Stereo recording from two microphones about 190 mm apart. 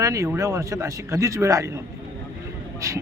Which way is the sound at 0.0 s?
15° right (ahead or behind).